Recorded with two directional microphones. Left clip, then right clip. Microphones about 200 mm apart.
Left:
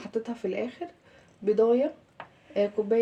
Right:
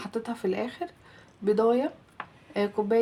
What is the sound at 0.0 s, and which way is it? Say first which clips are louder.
Speech: right 1 dB; 50° right (ahead or behind).